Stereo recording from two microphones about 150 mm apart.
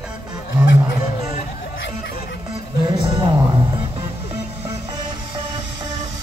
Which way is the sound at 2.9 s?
30° right (ahead or behind).